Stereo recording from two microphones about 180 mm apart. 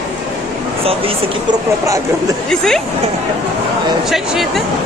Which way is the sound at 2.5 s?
5° left (ahead or behind).